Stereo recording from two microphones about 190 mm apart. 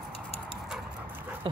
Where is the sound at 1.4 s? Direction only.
25° right (ahead or behind).